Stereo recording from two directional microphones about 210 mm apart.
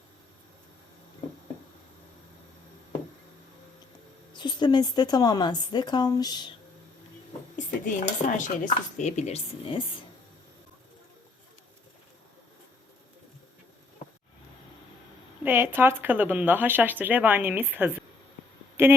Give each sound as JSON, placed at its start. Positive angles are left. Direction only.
{"t": 4.4, "sound": "a woman's voice", "side_deg": 20}
{"t": 7.5, "sound": "speech", "side_deg": 35}
{"t": 15.4, "sound": "speech", "side_deg": -10}